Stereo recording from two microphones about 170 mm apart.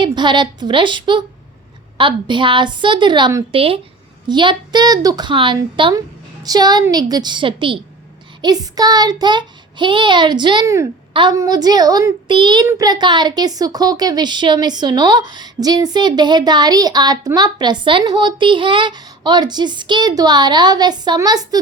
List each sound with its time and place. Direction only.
0.0 s a woman's voice: 25° right (ahead or behind)